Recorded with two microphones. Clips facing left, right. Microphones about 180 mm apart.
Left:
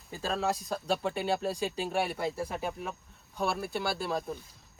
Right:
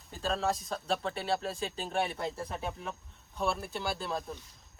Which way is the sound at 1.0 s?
10° left (ahead or behind).